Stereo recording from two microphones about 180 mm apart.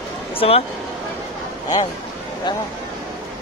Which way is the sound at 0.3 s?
30° left (ahead or behind).